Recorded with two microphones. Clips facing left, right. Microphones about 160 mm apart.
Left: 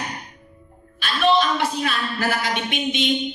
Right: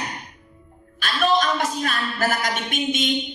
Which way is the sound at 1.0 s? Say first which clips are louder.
Left 2 dB; 45° right (ahead or behind).